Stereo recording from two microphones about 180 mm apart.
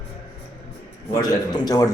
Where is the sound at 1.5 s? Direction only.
20° left (ahead or behind).